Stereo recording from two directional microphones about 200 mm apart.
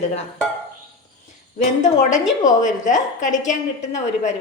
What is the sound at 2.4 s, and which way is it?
A woman's voice, 40° left (ahead or behind).